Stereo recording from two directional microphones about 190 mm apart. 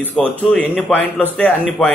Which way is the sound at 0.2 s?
5° left (ahead or behind).